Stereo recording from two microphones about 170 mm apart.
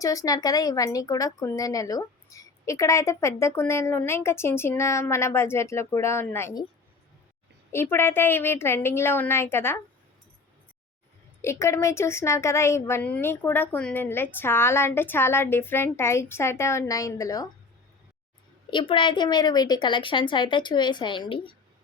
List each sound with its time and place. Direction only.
0.0 s speech: 20° left (ahead or behind)
7.7 s speech: 15° left (ahead or behind)
11.4 s speech: 15° left (ahead or behind)
18.7 s a woman's voice: 30° left (ahead or behind)